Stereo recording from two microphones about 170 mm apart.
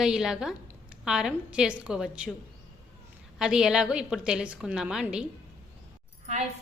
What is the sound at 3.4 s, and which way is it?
A woman's voice, 5° right (ahead or behind).